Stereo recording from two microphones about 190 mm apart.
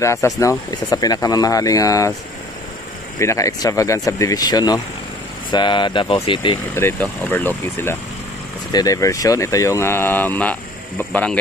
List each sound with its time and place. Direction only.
0.0 s speech: 15° left (ahead or behind)
3.2 s speech: 15° left (ahead or behind)
6.7 s speech: 10° left (ahead or behind)